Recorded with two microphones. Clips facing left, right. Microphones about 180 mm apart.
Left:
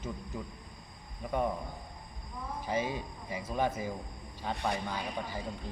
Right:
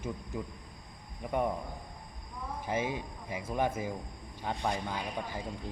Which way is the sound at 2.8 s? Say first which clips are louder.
Right 1 dB; 10° right (ahead or behind).